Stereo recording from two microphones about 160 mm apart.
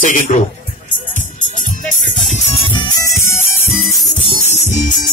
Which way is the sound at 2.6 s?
30° left (ahead or behind).